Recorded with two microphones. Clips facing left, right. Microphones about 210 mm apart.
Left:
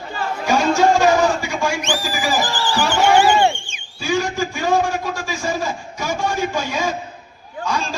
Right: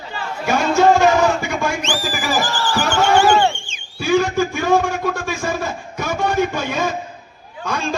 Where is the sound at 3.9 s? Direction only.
55° right (ahead or behind).